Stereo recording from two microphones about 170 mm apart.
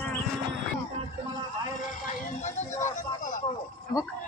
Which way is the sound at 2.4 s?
45° left (ahead or behind).